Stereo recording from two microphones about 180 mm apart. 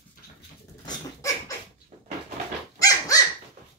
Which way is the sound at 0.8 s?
15° left (ahead or behind).